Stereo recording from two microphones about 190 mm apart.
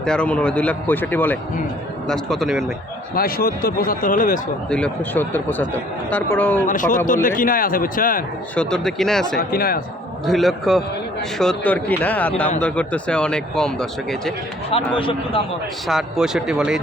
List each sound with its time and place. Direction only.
0.0 s speech: 5° left (ahead or behind)
3.2 s a man's voice: 50° left (ahead or behind)
4.7 s speech: 5° left (ahead or behind)
6.7 s a man's voice: 45° left (ahead or behind)
8.5 s speech: 5° left (ahead or behind)
9.4 s a man's voice: 50° left (ahead or behind)
10.2 s speech: centre (ahead or behind)
14.7 s a man's voice: 30° left (ahead or behind)
15.9 s speech: 5° right (ahead or behind)